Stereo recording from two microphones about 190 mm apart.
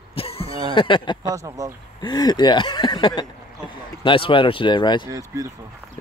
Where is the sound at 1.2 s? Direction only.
15° right (ahead or behind).